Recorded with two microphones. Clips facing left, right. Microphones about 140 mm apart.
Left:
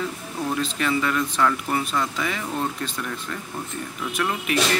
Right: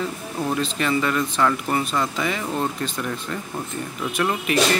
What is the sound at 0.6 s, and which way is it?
Speech, centre (ahead or behind).